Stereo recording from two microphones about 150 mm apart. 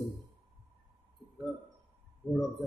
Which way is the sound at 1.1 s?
Centre (ahead or behind).